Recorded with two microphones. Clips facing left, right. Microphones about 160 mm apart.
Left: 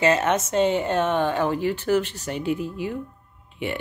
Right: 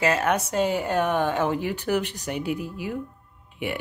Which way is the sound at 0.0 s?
5° right (ahead or behind).